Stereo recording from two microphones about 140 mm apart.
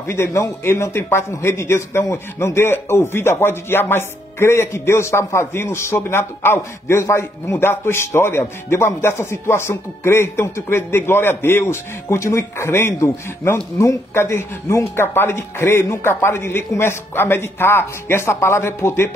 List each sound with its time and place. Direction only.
0.0 s speech: 20° left (ahead or behind)